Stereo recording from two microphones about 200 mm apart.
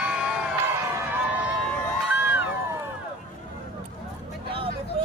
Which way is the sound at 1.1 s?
5° right (ahead or behind).